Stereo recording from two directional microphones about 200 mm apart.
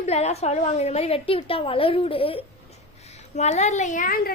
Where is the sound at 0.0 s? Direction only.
35° left (ahead or behind).